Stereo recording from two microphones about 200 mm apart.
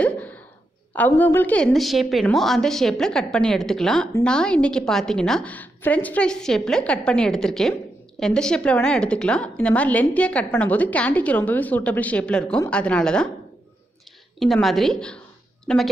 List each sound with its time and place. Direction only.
0.0 s a sound: 5° left (ahead or behind)
0.9 s a woman's voice: 10° left (ahead or behind)
14.4 s a woman's voice: centre (ahead or behind)